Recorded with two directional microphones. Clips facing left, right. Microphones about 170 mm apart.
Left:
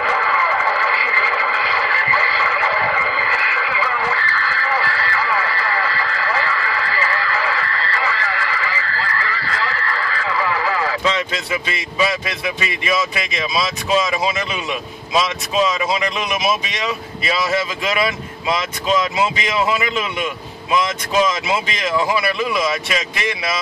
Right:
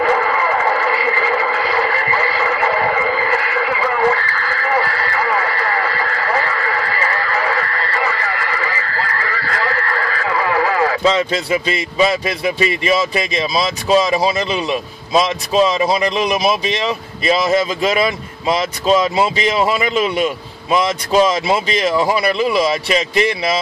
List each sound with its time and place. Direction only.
0.1 s radio: 50° right (ahead or behind)
11.1 s speech: 35° right (ahead or behind)